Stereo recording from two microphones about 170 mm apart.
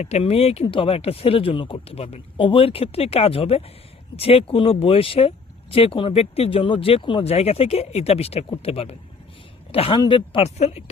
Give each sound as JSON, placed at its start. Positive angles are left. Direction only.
{"t": 0.0, "sound": "speech", "side_deg": 40}